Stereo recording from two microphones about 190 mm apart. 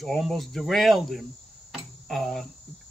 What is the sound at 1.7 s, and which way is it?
Cricket, centre (ahead or behind).